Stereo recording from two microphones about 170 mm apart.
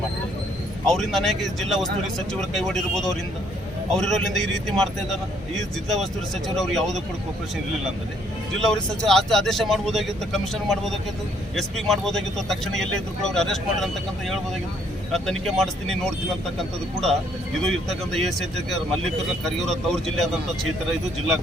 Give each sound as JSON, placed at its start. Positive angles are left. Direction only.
{"t": 0.9, "sound": "speech", "side_deg": 0}
{"t": 8.5, "sound": "speech", "side_deg": 5}
{"t": 17.6, "sound": "speech", "side_deg": 0}